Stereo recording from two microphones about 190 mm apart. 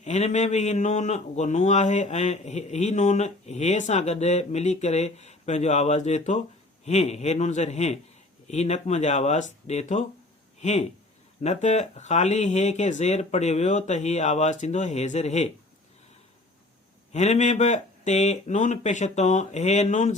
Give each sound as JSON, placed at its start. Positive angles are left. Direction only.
{"t": 0.0, "sound": "a man's voice", "side_deg": 35}
{"t": 17.1, "sound": "a man's voice", "side_deg": 35}